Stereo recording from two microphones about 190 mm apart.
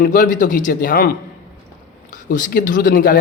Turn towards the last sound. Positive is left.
turn(degrees=45)  # may be behind; listen again after turning